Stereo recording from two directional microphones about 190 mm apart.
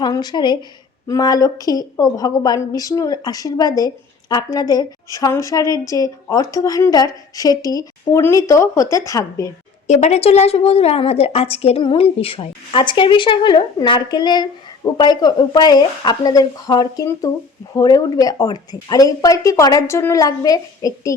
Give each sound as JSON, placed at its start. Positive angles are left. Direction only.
{"t": 0.0, "sound": "a woman's voice", "side_deg": 20}
{"t": 9.8, "sound": "a woman's voice", "side_deg": 40}